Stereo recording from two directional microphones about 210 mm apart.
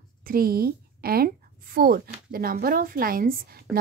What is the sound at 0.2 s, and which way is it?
A woman's voice, 45° right (ahead or behind).